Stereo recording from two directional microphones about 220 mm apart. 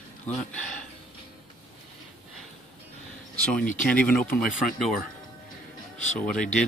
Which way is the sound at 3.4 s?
5° left (ahead or behind).